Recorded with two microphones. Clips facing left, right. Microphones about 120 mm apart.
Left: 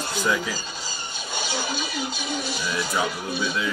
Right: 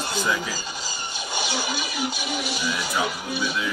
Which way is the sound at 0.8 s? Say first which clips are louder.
Right 2 dB; 15° right (ahead or behind).